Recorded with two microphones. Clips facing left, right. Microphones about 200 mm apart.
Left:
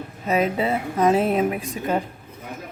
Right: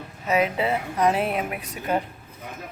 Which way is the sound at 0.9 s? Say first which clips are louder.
Left 5 dB; 25° left (ahead or behind).